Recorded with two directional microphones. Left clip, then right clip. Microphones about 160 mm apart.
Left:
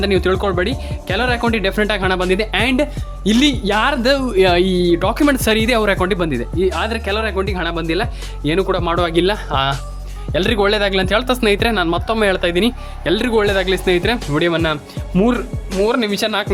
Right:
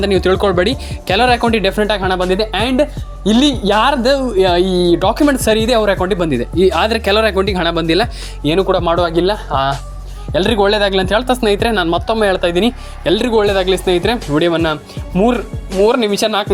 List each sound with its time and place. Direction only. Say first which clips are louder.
0.0 s speech: right 3 dB; 10° right (ahead or behind)
1.7 s speech: right 2 dB; centre (ahead or behind)
4.0 s speech: right 1 dB; 10° left (ahead or behind)
6.2 s speech: right 5 dB; 20° right (ahead or behind)
8.4 s speech: right 4 dB; 5° right (ahead or behind)
9.0 s speech: right 2 dB; 5° left (ahead or behind)
11.7 s speech: right 3 dB; 5° right (ahead or behind)